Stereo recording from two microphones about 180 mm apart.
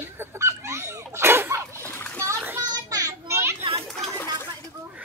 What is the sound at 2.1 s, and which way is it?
Splash, 15° right (ahead or behind).